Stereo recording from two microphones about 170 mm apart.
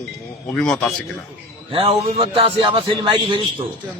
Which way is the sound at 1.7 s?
35° right (ahead or behind).